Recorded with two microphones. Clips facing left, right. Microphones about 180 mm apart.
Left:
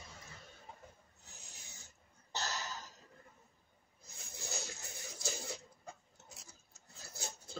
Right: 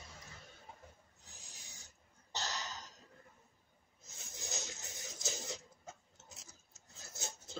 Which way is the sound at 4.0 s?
20° right (ahead or behind).